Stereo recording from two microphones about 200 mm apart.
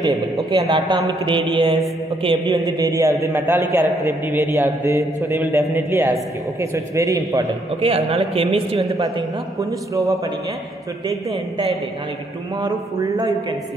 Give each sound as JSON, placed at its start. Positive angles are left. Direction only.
{"t": 0.5, "sound": "a woman's voice", "side_deg": -20}
{"t": 7.8, "sound": "a woman's voice", "side_deg": -30}
{"t": 9.6, "sound": "a man's voice", "side_deg": -15}